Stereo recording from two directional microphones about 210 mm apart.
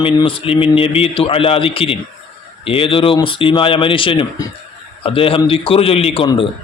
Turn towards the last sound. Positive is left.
turn(degrees=25)  # may be behind; listen again after turning